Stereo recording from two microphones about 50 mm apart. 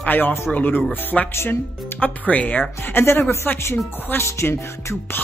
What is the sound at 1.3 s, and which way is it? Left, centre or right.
Speech, left.